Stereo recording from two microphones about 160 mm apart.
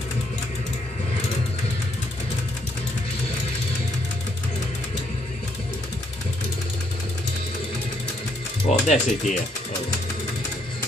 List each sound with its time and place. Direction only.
8.6 s speech: 45° left (ahead or behind)